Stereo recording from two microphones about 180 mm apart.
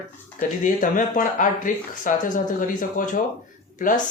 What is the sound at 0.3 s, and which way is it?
Speech, 45° left (ahead or behind).